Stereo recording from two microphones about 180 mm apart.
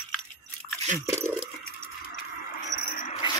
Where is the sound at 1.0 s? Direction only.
15° right (ahead or behind).